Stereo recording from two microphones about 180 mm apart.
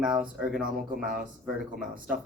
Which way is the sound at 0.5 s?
50° right (ahead or behind).